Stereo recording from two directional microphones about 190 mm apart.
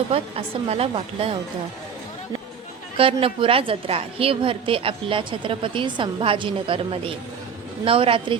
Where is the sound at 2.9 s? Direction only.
30° right (ahead or behind).